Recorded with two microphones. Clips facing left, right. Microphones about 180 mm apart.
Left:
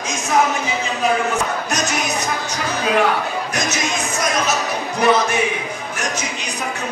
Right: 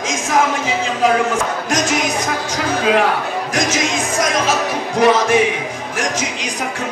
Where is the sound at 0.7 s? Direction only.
90° right.